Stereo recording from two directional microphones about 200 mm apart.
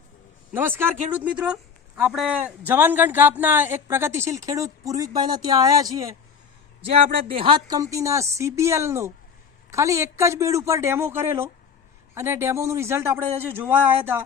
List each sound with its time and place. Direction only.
0.5 s speech: 10° right (ahead or behind)